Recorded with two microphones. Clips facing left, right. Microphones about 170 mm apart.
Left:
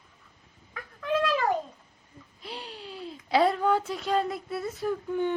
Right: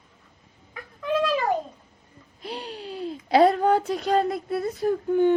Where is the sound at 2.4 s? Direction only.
40° right (ahead or behind).